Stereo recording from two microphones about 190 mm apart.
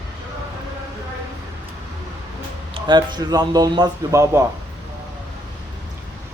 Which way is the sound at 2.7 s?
25° right (ahead or behind).